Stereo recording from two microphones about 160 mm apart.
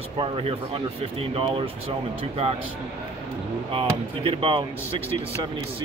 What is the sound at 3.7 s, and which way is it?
Speech, 35° right (ahead or behind).